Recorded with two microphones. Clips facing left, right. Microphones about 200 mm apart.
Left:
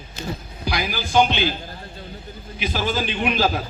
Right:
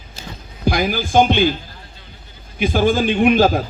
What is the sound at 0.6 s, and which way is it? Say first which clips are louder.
Speech: right 7 dB; 50° right (ahead or behind).